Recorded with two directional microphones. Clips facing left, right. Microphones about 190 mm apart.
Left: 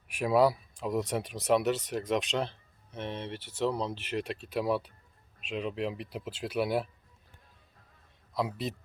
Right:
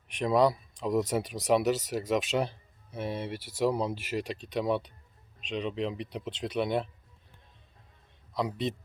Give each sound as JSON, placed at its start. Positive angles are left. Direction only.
{"t": 0.1, "sound": "speech", "side_deg": 5}
{"t": 8.3, "sound": "speech", "side_deg": 5}